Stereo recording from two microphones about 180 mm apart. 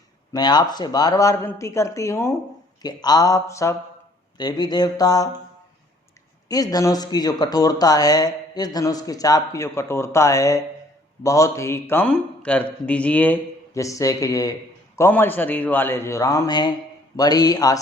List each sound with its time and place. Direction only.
0.3 s speech: 25° left (ahead or behind)
6.5 s speech: 20° left (ahead or behind)